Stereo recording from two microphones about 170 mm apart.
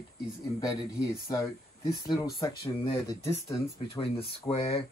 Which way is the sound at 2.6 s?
30° left (ahead or behind).